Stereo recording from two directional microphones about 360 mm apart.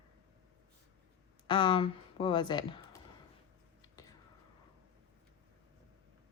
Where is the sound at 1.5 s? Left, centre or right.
Centre.